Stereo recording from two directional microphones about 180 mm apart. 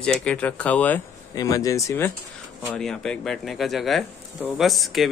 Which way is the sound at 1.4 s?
20° left (ahead or behind).